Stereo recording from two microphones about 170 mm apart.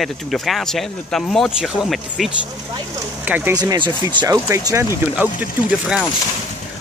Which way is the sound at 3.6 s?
25° right (ahead or behind).